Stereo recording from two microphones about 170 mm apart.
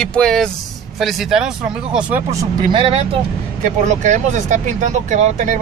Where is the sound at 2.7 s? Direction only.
35° right (ahead or behind).